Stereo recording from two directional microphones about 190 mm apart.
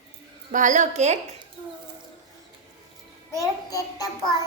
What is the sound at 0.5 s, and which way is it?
Speech, 40° right (ahead or behind).